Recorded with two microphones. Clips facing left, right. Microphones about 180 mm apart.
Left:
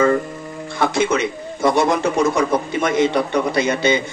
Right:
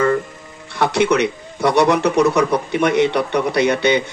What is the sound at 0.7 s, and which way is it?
Speech, 65° right (ahead or behind).